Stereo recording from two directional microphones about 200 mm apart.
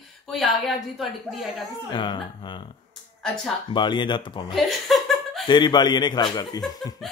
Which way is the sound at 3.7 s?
20° left (ahead or behind).